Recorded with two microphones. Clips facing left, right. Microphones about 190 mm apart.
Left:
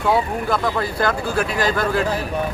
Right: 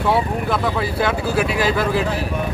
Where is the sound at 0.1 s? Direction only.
Centre (ahead or behind).